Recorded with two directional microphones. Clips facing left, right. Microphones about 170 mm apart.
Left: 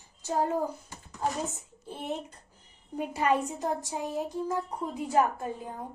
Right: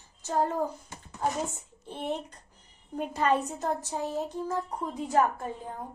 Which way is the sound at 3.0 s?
10° left (ahead or behind).